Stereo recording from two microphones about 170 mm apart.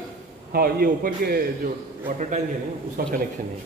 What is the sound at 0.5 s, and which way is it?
Speech, 60° right (ahead or behind).